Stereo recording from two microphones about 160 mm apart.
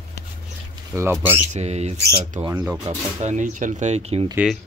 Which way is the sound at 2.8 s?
45° right (ahead or behind).